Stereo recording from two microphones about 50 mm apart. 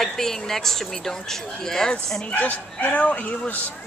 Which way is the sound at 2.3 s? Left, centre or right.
Left.